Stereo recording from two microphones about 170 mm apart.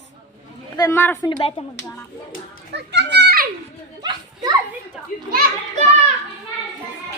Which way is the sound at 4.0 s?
25° right (ahead or behind).